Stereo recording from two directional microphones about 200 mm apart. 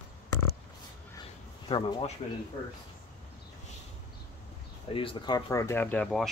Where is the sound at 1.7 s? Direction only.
25° left (ahead or behind).